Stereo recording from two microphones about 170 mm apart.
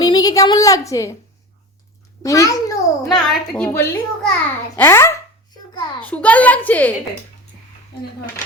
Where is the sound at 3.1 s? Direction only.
Centre (ahead or behind).